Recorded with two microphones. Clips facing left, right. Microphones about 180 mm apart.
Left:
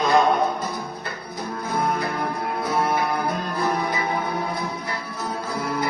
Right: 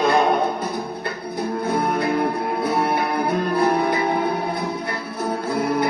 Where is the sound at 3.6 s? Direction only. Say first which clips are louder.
Right 5 dB; 60° right (ahead or behind).